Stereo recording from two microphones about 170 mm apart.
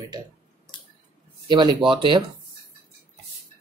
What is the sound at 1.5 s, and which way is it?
Speech, 30° right (ahead or behind).